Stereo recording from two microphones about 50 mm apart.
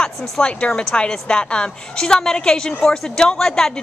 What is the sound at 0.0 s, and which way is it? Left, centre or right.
A woman's voice, centre.